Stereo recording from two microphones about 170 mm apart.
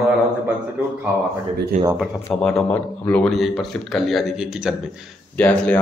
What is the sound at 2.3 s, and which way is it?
Speech, 5° left (ahead or behind).